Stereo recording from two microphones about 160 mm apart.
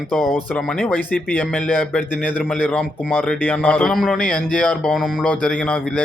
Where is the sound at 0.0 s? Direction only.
Centre (ahead or behind).